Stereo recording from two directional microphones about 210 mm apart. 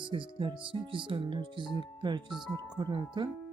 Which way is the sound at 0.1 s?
25° right (ahead or behind).